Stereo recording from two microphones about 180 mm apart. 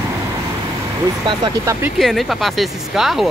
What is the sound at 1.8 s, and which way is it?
Speech, centre (ahead or behind).